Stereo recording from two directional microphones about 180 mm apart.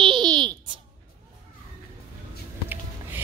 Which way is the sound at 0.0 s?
25° right (ahead or behind).